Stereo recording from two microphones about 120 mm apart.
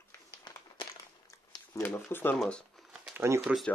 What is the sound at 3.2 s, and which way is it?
Speech, 20° right (ahead or behind).